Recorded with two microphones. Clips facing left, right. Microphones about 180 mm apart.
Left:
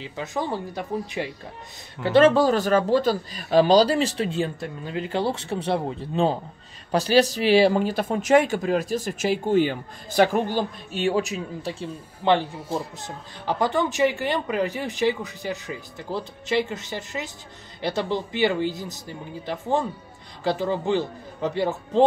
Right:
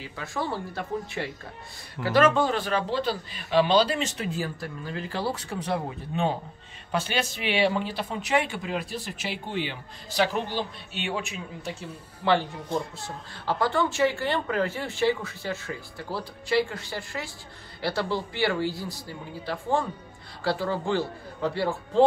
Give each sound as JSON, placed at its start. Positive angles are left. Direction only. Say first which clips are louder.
{"t": 0.0, "sound": "a woman's voice", "louder": "left 3 dB", "side_deg": 20}
{"t": 2.0, "sound": "speech", "louder": "left 5 dB", "side_deg": 30}
{"t": 12.2, "sound": "speech", "louder": "left 3 dB", "side_deg": 25}
{"t": 12.5, "sound": "speech", "louder": "left 1 dB", "side_deg": 5}
{"t": 13.0, "sound": "a woman's voice", "louder": "left 2 dB", "side_deg": 15}